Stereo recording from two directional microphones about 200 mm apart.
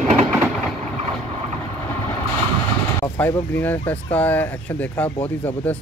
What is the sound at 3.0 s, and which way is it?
Speech, 15° left (ahead or behind).